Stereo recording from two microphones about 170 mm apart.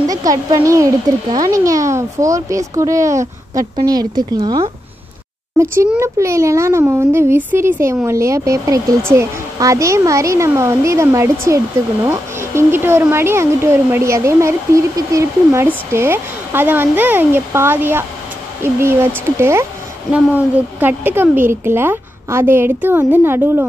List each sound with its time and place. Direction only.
0.1 s a child's voice: 20° right (ahead or behind)